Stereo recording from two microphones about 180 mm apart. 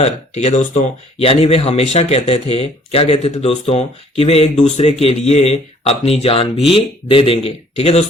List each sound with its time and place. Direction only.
0.0 s speech: 40° left (ahead or behind)